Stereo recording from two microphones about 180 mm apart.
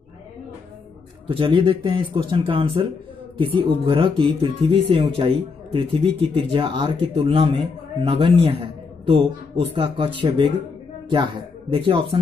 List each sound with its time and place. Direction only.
1.2 s a man's voice: 30° right (ahead or behind)